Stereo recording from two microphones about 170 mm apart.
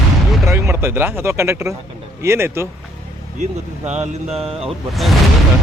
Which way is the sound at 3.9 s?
40° right (ahead or behind).